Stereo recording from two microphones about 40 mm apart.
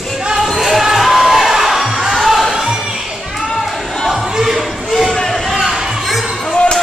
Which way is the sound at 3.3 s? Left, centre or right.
Centre.